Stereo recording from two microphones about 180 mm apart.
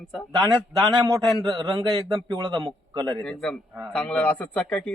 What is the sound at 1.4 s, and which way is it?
A man's voice, 20° right (ahead or behind).